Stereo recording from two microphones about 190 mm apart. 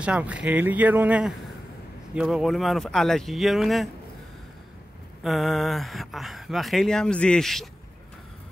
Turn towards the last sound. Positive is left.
turn(degrees=0)  # may be behind; listen again after turning